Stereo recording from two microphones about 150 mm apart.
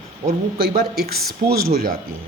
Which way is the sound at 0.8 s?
90° right.